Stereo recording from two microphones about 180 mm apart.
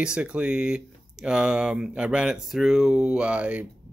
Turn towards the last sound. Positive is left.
turn(degrees=-5)  # may be behind; listen again after turning